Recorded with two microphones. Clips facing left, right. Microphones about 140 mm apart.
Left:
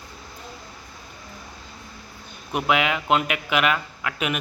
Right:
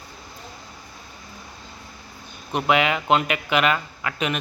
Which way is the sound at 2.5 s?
Centre (ahead or behind).